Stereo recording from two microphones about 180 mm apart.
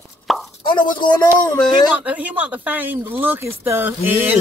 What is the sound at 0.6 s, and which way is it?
Speech, 25° left (ahead or behind).